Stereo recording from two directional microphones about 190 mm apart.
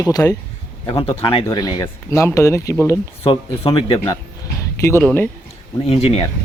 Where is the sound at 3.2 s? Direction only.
25° left (ahead or behind).